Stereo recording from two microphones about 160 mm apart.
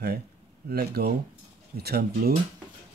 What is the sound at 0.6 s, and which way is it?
Speech, 75° right (ahead or behind).